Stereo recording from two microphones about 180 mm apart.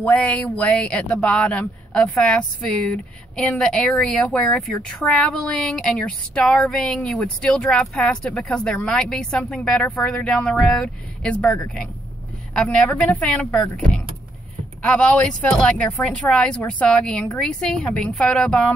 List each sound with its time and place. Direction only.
0.0 s speech: 5° left (ahead or behind)